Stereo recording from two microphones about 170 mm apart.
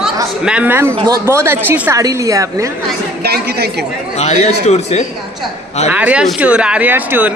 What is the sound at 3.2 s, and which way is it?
Speech, 70° right (ahead or behind).